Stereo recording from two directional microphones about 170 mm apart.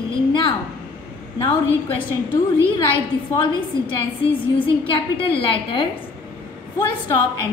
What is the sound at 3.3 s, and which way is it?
A woman's voice, 30° left (ahead or behind).